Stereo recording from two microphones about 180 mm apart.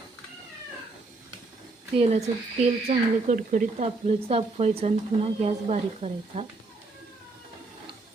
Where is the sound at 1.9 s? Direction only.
35° right (ahead or behind).